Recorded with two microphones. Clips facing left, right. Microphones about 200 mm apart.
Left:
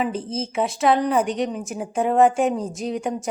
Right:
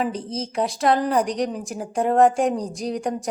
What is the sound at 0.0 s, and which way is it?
A woman's voice, 5° left (ahead or behind).